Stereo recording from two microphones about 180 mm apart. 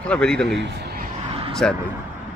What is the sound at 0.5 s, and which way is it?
Speech, 75° right (ahead or behind).